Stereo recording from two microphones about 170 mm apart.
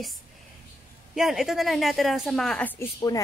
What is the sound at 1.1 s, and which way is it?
A woman's voice, centre (ahead or behind).